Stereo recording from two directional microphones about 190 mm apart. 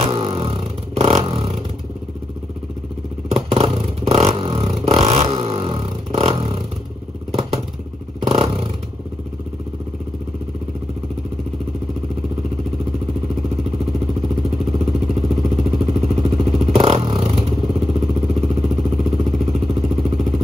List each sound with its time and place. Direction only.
0.0 s vehicle: 30° right (ahead or behind)
3.3 s vehicle: 35° right (ahead or behind)
8.3 s vehicle: 30° right (ahead or behind)
14.6 s vehicle: 30° right (ahead or behind)